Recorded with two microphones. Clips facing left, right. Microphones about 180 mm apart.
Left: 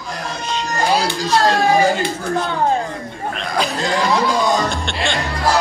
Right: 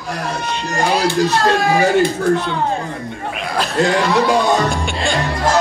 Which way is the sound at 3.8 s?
70° right (ahead or behind).